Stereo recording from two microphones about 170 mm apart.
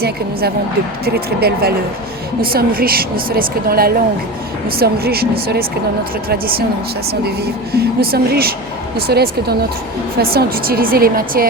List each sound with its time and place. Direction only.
1.0 s speech: 65° right (ahead or behind)